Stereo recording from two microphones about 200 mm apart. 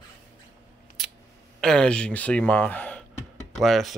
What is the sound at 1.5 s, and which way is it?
Speech, 5° left (ahead or behind).